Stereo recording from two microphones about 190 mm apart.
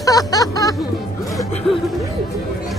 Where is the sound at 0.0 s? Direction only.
20° left (ahead or behind).